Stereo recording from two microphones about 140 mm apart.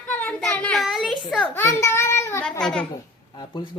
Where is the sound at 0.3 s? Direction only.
5° left (ahead or behind).